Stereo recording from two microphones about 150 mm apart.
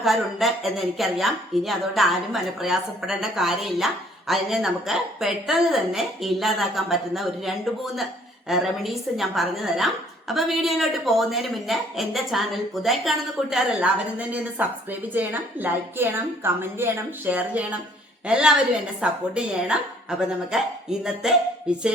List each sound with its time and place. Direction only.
0.0 s a woman's voice: centre (ahead or behind)